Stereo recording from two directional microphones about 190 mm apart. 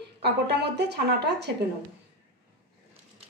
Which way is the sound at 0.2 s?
60° right (ahead or behind).